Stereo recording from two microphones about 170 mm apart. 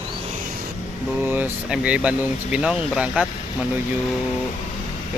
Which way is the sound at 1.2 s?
10° right (ahead or behind).